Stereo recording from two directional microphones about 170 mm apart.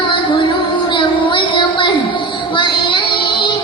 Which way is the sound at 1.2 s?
30° left (ahead or behind).